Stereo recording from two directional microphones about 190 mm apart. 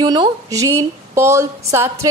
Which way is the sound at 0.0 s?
20° right (ahead or behind).